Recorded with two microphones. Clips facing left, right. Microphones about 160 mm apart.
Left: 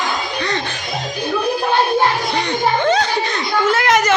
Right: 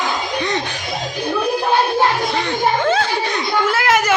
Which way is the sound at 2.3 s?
Centre (ahead or behind).